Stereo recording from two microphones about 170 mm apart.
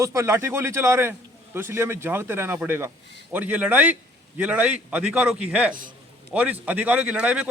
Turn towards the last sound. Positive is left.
turn(degrees=-5)  # may be behind; listen again after turning